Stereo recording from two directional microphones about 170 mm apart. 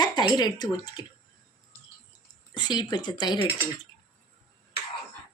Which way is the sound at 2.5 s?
25° left (ahead or behind).